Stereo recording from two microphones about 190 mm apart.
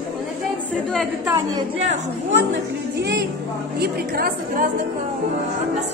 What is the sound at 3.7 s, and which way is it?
Speech, 55° right (ahead or behind).